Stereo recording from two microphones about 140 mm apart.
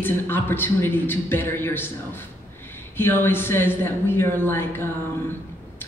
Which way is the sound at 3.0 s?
15° left (ahead or behind).